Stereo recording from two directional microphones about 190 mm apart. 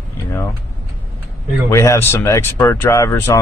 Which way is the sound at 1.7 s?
15° left (ahead or behind).